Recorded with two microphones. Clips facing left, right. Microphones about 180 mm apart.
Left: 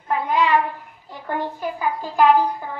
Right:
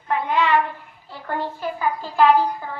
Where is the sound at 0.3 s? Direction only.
10° left (ahead or behind).